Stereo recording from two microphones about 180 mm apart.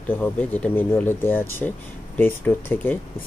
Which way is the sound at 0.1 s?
10° left (ahead or behind).